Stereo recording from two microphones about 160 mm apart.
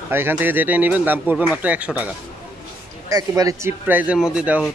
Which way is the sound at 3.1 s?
20° right (ahead or behind).